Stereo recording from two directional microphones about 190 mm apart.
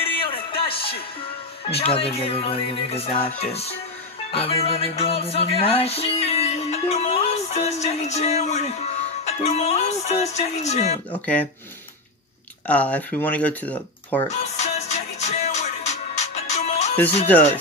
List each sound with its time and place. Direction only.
0.2 s music: 30° left (ahead or behind)
1.7 s speech: 30° left (ahead or behind)
4.3 s music: 30° left (ahead or behind)
9.2 s speech: 35° left (ahead or behind)
11.1 s speech: 5° left (ahead or behind)
12.6 s speech: 5° left (ahead or behind)
14.3 s music: 35° left (ahead or behind)